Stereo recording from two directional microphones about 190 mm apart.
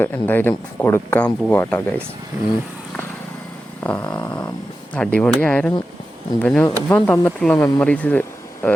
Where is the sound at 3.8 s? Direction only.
10° left (ahead or behind).